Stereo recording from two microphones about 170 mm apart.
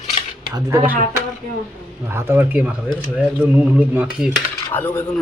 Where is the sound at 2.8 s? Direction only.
5° left (ahead or behind).